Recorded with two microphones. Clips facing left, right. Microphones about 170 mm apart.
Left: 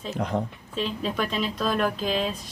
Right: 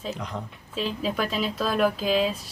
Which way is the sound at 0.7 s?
5° right (ahead or behind).